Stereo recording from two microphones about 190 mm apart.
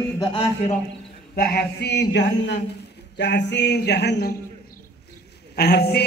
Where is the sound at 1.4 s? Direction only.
55° left (ahead or behind).